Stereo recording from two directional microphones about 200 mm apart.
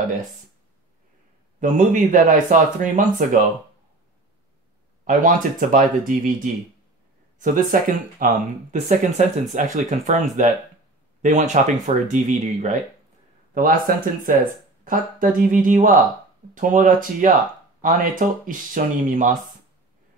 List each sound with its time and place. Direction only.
1.6 s speech: 40° right (ahead or behind)
5.0 s speech: 40° right (ahead or behind)